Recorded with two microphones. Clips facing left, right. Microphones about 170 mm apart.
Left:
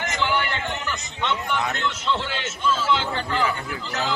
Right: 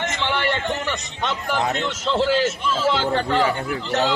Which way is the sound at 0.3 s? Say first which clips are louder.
Right 3 dB; 30° right (ahead or behind).